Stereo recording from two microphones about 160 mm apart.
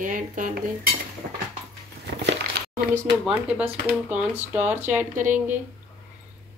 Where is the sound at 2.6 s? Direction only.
90° right.